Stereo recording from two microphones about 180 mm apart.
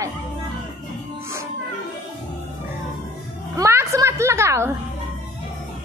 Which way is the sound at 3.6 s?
15° right (ahead or behind).